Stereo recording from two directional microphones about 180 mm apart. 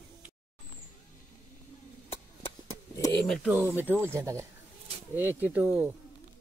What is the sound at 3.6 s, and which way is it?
Speech, 10° right (ahead or behind).